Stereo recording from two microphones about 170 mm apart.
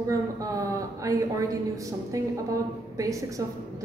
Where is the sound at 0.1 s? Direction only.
20° right (ahead or behind).